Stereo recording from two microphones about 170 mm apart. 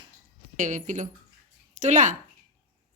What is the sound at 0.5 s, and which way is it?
Speech, 45° right (ahead or behind).